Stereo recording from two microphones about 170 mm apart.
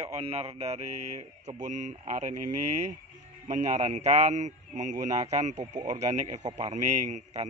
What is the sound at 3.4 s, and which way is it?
Speech, 45° right (ahead or behind).